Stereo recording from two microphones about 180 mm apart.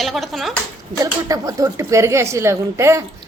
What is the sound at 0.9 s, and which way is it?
A woman's voice, 20° right (ahead or behind).